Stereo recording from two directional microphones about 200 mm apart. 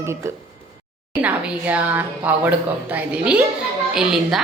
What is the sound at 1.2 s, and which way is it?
A woman's voice, 10° right (ahead or behind).